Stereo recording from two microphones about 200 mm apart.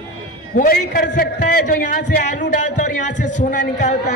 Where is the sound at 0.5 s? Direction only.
45° left (ahead or behind).